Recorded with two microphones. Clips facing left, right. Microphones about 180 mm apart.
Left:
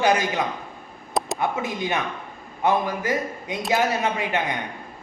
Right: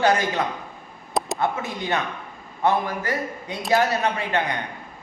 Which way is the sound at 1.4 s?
20° left (ahead or behind).